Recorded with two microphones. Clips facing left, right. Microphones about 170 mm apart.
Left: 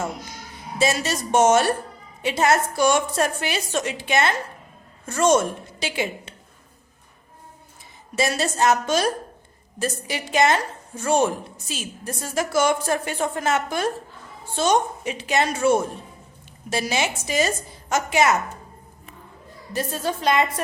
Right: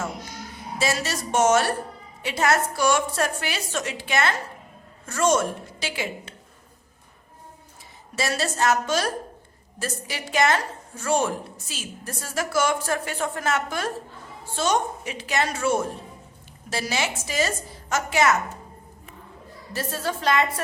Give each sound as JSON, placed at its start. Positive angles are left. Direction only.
{"t": 0.8, "sound": "a woman's voice", "side_deg": 20}
{"t": 8.1, "sound": "a woman's voice", "side_deg": 20}
{"t": 19.7, "sound": "a woman's voice", "side_deg": 20}